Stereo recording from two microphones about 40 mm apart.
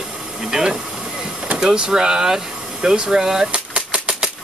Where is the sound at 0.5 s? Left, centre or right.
Centre.